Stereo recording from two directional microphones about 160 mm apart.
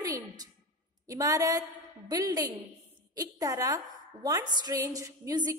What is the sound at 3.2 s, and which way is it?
A woman's voice, 20° right (ahead or behind).